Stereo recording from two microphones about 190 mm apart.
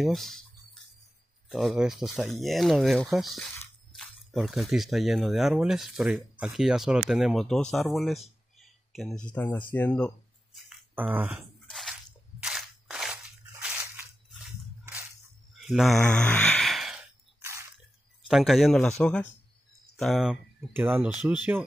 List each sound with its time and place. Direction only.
0.0 s speech: centre (ahead or behind)
1.5 s speech: centre (ahead or behind)
11.6 s crunch: centre (ahead or behind)
15.5 s sigh: centre (ahead or behind)
17.4 s squish: 15° right (ahead or behind)
18.2 s speech: centre (ahead or behind)